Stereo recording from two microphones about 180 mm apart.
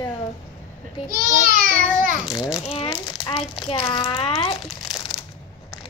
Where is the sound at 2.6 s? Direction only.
30° left (ahead or behind).